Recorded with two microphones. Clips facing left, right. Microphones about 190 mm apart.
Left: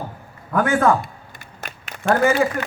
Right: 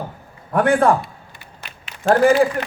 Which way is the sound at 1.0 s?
45° left (ahead or behind).